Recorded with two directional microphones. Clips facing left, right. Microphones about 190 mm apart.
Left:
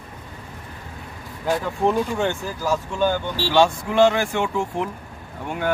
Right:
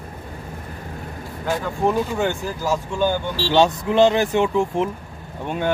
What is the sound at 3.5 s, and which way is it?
Speech, 20° right (ahead or behind).